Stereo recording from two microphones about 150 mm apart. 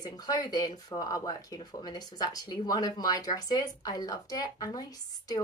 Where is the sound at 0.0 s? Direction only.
25° left (ahead or behind).